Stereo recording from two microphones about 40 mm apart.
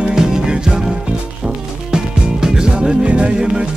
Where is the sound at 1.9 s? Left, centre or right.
Centre.